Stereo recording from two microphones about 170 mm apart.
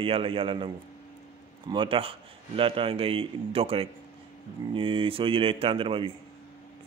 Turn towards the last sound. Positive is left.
turn(degrees=-30)  # may be behind; listen again after turning